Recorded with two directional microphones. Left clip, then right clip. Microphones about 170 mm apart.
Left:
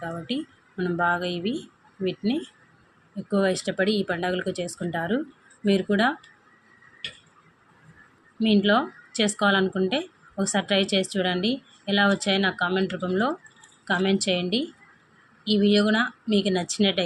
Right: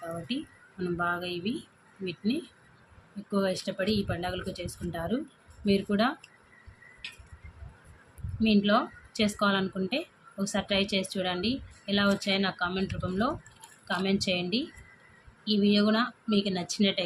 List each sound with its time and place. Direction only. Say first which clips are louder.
0.3 s speech: left 5 dB; 30° left (ahead or behind)
8.4 s speech: left 4 dB; 30° left (ahead or behind)